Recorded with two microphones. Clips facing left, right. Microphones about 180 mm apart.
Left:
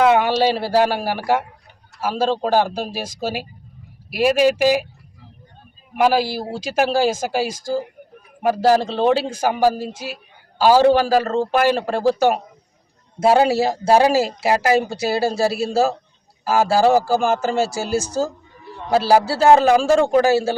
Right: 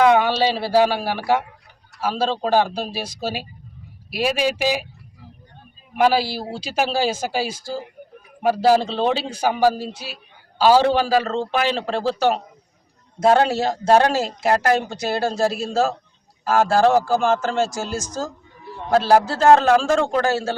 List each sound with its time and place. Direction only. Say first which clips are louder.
0.0 s speech: left 1 dB; 5° left (ahead or behind)
4.4 s speech: left 5 dB; 10° left (ahead or behind)
6.0 s speech: left 1 dB; 10° left (ahead or behind)
8.8 s speech: left 4 dB; 10° left (ahead or behind)
9.9 s speech: left 5 dB; 45° left (ahead or behind)
10.6 s speech: left 2 dB; 10° left (ahead or behind)